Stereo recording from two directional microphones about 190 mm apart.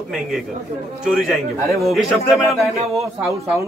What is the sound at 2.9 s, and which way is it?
Speech, 15° right (ahead or behind).